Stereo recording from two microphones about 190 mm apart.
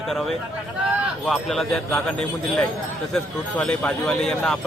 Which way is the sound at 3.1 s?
5° left (ahead or behind).